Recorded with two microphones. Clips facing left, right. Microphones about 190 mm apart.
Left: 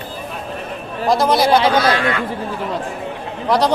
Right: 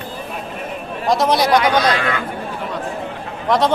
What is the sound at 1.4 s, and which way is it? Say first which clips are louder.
Speech: left 2 dB; 30° left (ahead or behind).